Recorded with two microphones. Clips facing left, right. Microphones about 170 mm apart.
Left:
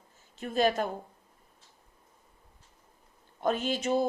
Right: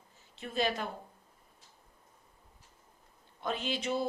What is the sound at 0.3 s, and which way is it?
Speech, 45° left (ahead or behind).